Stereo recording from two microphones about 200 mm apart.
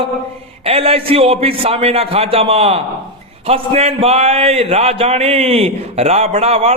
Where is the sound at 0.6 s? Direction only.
30° right (ahead or behind).